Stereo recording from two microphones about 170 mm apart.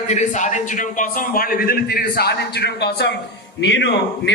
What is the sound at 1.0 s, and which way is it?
A man's voice, 55° left (ahead or behind).